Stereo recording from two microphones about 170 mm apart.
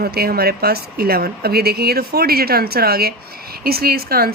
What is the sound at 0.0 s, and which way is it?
Speech, 65° right (ahead or behind).